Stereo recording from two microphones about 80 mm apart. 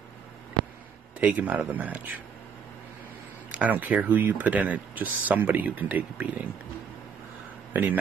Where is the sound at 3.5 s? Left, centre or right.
Centre.